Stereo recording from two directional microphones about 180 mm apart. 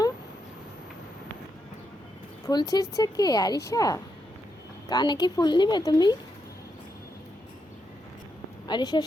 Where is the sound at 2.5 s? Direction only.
20° left (ahead or behind).